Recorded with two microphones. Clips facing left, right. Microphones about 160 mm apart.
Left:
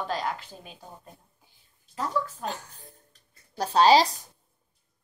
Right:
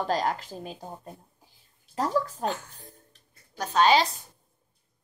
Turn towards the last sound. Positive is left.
turn(degrees=35)  # may be behind; listen again after turning